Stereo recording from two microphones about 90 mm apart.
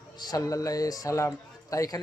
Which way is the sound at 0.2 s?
45° left (ahead or behind).